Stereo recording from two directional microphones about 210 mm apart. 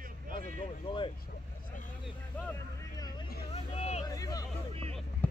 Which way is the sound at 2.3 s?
15° left (ahead or behind).